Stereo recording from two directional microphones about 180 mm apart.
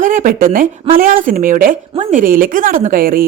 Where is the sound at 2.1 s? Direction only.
50° right (ahead or behind).